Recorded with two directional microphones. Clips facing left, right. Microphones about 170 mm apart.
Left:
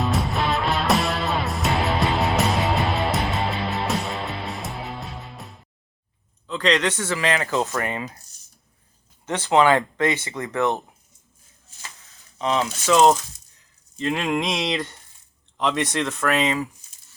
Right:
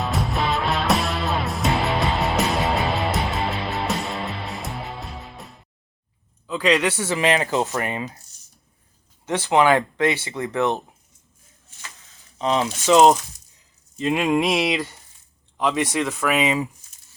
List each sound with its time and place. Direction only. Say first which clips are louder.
0.0 s music: left 1 dB; centre (ahead or behind)
6.5 s speech: right 2 dB; 10° right (ahead or behind)
9.5 s a sound: even; 15° right (ahead or behind)
10.2 s speech: right 1 dB; 20° right (ahead or behind)
12.5 s a sound: right 3 dB; 15° right (ahead or behind)
15.5 s speech: right 1 dB; 5° right (ahead or behind)